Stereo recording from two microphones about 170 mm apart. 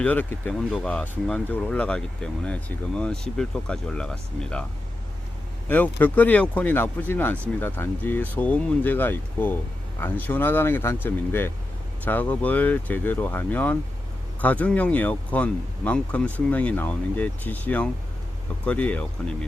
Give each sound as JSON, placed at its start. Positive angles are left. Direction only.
{"t": 0.0, "sound": "speech", "side_deg": 10}
{"t": 5.6, "sound": "speech", "side_deg": 10}